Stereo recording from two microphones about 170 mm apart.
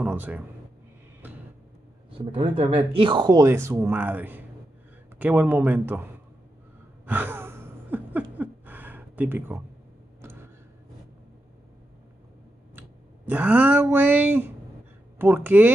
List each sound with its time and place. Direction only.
0.0 s a man's voice: 10° right (ahead or behind)
2.1 s a man's voice: 30° right (ahead or behind); by 6.0 s 10° right (ahead or behind)
7.1 s a sound: 10° right (ahead or behind)
12.7 s a man's voice: 10° right (ahead or behind)